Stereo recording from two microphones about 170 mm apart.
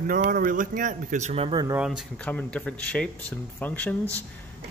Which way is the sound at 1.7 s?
Centre (ahead or behind).